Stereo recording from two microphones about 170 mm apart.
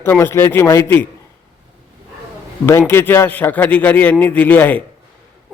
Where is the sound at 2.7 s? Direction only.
15° left (ahead or behind).